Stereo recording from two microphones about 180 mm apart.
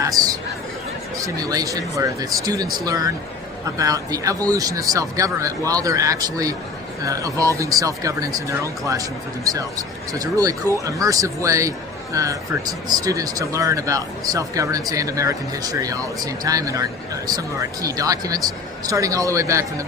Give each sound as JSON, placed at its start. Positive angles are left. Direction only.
{"t": 0.0, "sound": "chatter", "side_deg": -20}
{"t": 1.2, "sound": "speech", "side_deg": -20}